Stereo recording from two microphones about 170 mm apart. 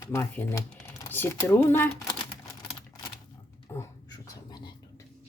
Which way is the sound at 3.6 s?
20° left (ahead or behind).